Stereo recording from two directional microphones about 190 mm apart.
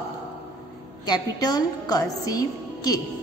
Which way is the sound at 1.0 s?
20° left (ahead or behind).